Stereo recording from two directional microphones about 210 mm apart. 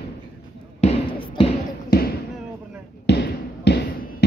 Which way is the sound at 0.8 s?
25° left (ahead or behind).